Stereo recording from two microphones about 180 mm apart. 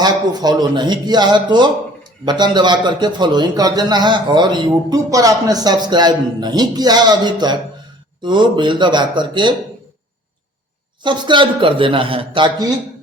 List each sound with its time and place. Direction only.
0.0 s a man's voice: 20° right (ahead or behind)
11.0 s a man's voice: 25° right (ahead or behind)